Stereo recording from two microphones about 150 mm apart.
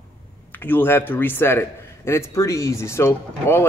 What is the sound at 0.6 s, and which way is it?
Speech, 15° left (ahead or behind).